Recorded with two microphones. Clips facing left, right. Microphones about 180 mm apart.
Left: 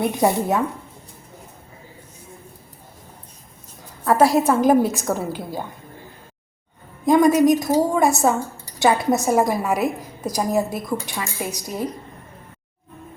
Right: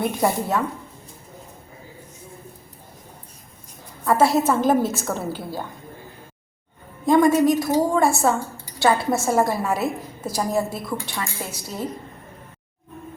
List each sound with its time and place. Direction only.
0.0 s a woman's voice: 20° left (ahead or behind)
4.0 s a woman's voice: 15° left (ahead or behind)
7.0 s a woman's voice: 20° left (ahead or behind)